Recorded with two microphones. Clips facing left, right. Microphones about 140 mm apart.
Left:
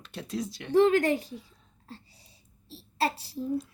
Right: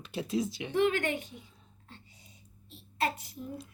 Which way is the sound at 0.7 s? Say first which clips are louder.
Left 8 dB; 35° left (ahead or behind).